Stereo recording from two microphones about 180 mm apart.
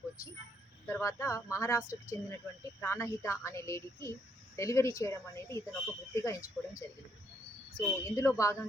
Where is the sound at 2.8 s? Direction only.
15° left (ahead or behind).